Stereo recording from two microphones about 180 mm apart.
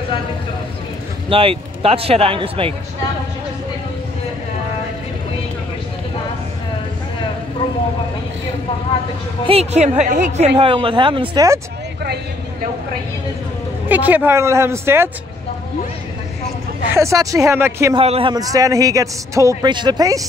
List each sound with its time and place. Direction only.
1.3 s a man's voice: 30° right (ahead or behind)
9.5 s a man's voice: 35° right (ahead or behind)
10.4 s a man's voice: 30° right (ahead or behind)
13.8 s a woman's voice: 10° right (ahead or behind)
16.9 s a woman's voice: 15° right (ahead or behind)
17.9 s a man's voice: 30° right (ahead or behind)